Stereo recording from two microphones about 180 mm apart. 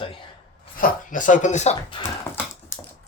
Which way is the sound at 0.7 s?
45° left (ahead or behind).